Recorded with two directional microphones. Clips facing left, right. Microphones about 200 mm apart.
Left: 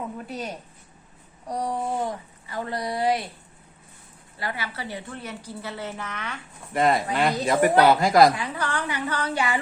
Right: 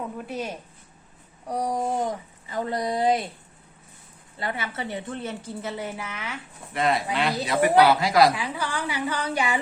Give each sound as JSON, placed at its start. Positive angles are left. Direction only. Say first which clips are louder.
{"t": 0.3, "sound": "speech", "louder": "right 2 dB", "side_deg": 0}
{"t": 1.5, "sound": "a woman's voice", "louder": "right 1 dB", "side_deg": -10}
{"t": 4.4, "sound": "a woman's voice", "louder": "right 2 dB", "side_deg": -25}
{"t": 6.7, "sound": "speech", "louder": "left 2 dB", "side_deg": 50}
{"t": 8.4, "sound": "a woman's voice", "louder": "left 1 dB", "side_deg": -10}